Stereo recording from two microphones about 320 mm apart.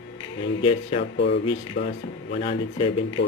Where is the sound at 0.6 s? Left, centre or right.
Centre.